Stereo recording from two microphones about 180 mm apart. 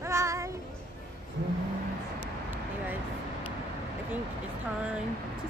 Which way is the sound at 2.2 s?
10° right (ahead or behind).